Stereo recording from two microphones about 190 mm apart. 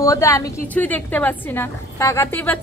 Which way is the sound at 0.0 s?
15° left (ahead or behind).